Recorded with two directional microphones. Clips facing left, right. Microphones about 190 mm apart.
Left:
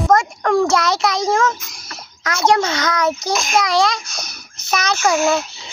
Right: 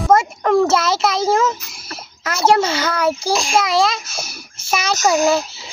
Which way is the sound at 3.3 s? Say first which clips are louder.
Right 2 dB; 30° right (ahead or behind).